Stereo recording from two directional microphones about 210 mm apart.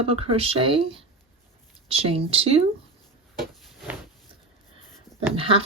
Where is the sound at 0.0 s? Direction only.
25° right (ahead or behind).